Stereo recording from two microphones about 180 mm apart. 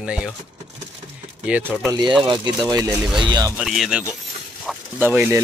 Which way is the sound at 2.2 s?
25° right (ahead or behind).